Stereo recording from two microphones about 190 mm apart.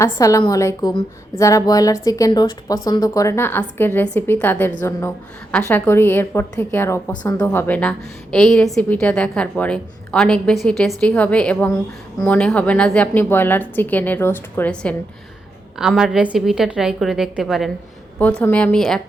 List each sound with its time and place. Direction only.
0.0 s a woman's voice: 15° left (ahead or behind)